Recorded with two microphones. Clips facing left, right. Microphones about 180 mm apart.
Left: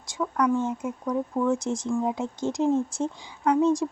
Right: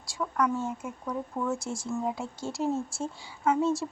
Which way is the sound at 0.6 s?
20° left (ahead or behind).